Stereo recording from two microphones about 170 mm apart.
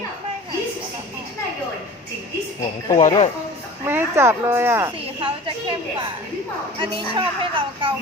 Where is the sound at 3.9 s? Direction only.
15° right (ahead or behind).